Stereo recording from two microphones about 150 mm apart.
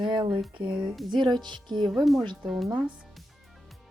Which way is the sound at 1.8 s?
Centre (ahead or behind).